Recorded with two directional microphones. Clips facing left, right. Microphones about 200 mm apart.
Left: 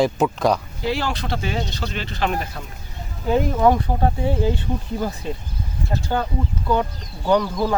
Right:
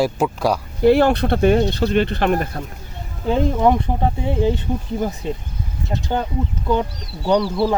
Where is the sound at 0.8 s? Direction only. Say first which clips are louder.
Right 11 dB; 55° right (ahead or behind).